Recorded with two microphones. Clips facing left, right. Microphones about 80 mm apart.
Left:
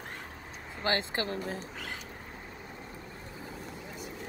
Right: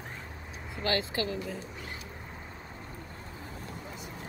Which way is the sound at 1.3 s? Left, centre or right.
Left.